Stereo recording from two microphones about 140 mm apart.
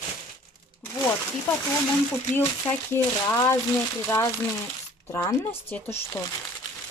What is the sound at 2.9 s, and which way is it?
Speech, 20° left (ahead or behind).